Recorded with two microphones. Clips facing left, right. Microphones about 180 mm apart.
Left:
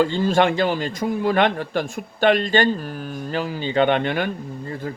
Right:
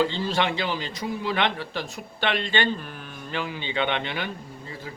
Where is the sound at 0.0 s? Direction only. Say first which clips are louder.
Left 6 dB; 50° left (ahead or behind).